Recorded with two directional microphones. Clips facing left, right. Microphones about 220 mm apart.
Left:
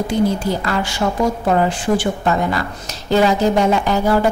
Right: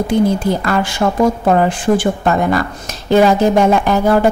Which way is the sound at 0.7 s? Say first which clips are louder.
Right 4 dB; 50° right (ahead or behind).